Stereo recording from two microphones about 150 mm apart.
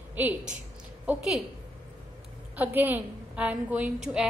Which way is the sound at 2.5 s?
10° right (ahead or behind).